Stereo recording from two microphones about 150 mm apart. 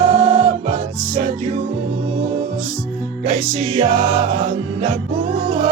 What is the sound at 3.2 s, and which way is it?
Music, 55° right (ahead or behind).